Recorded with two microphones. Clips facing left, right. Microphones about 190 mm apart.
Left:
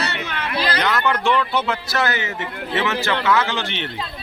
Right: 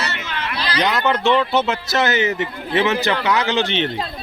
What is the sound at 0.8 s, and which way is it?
A man's voice, 20° right (ahead or behind).